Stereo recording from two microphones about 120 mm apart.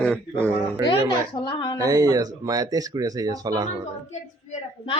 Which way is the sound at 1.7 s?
30° right (ahead or behind).